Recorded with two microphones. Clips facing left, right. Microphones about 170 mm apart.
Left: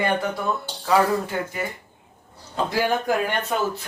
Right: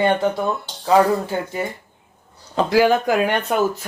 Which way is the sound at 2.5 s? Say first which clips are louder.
Right 7 dB; 90° right.